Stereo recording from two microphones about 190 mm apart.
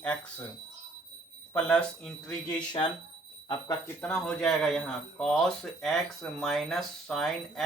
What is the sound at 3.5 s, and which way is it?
Speech, 20° left (ahead or behind).